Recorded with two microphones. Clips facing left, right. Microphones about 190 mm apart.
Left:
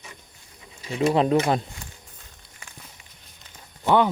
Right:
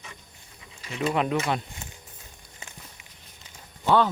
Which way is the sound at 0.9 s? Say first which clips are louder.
Left 5 dB; 30° left (ahead or behind).